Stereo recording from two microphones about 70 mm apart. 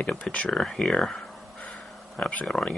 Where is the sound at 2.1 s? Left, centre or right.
Centre.